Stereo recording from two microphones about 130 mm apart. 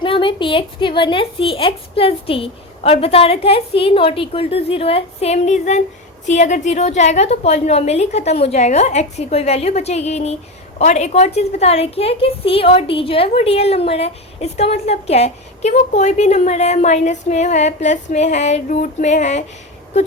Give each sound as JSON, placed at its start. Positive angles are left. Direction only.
{"t": 0.0, "sound": "a woman's voice", "side_deg": 40}